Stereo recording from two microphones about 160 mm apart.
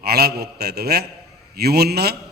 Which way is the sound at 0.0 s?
80° right.